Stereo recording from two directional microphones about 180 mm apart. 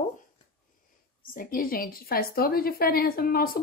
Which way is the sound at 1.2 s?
55° left (ahead or behind).